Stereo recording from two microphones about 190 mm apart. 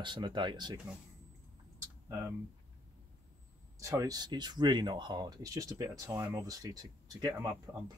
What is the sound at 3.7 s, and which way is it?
Speech, 15° right (ahead or behind).